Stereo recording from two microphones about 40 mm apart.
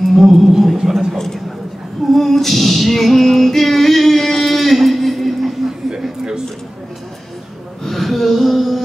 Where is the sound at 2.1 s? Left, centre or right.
Centre.